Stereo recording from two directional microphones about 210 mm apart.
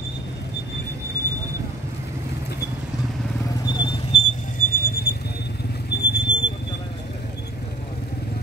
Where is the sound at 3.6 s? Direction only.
20° left (ahead or behind).